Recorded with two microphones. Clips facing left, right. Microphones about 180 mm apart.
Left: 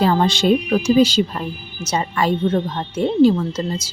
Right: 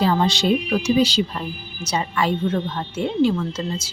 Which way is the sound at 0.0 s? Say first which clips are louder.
Left 3 dB; 50° left (ahead or behind).